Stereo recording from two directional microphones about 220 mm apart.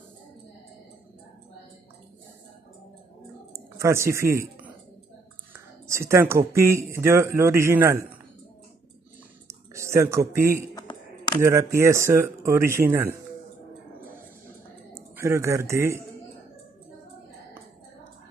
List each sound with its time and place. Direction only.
3.5 s a sound: 15° right (ahead or behind)
5.9 s speech: 10° right (ahead or behind)
9.8 s speech: 10° right (ahead or behind)
10.7 s a sound: 20° left (ahead or behind)
11.4 s speech: 10° right (ahead or behind)
15.0 s a man's voice: 15° right (ahead or behind)